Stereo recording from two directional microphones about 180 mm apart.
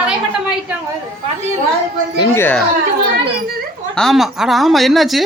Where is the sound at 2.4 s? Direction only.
10° left (ahead or behind).